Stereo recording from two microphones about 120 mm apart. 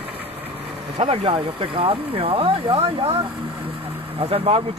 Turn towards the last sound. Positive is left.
turn(degrees=-50)  # may be behind; listen again after turning